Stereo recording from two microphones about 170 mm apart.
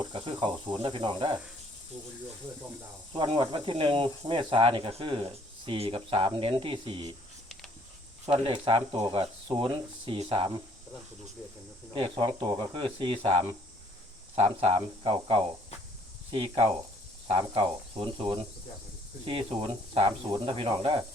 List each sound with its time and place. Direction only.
0.0 s speech: 30° right (ahead or behind)
3.1 s speech: 30° right (ahead or behind)
8.3 s speech: 30° right (ahead or behind)
11.9 s speech: 30° right (ahead or behind)